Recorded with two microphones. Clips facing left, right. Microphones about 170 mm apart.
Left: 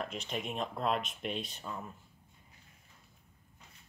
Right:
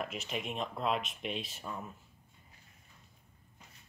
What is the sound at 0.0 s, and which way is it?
Speech, 5° right (ahead or behind).